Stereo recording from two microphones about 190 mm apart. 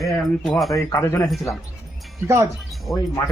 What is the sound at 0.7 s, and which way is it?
Speech, 20° left (ahead or behind).